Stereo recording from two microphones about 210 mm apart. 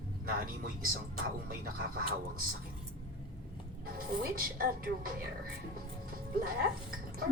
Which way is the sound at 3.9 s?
45° right (ahead or behind).